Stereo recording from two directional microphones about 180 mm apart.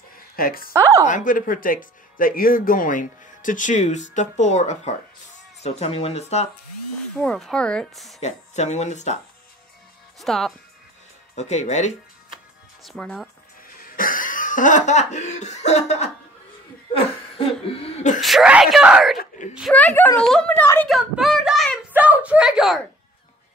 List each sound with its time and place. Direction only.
0.4 s speech: 55° left (ahead or behind); by 6.5 s 35° left (ahead or behind)
7.2 s speech: 5° left (ahead or behind)
8.2 s speech: 40° left (ahead or behind)
10.2 s speech: centre (ahead or behind)
11.3 s speech: 40° left (ahead or behind)
12.8 s speech: centre (ahead or behind)
13.7 s speech: 50° left (ahead or behind)
18.2 s speech: 5° right (ahead or behind)
19.1 s screaming: 45° left (ahead or behind)
19.7 s a woman's voice: 10° left (ahead or behind)
20.9 s a child's voice: centre (ahead or behind)